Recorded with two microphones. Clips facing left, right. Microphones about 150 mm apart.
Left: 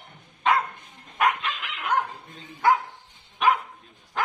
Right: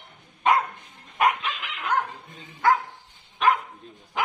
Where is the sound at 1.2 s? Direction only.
5° right (ahead or behind).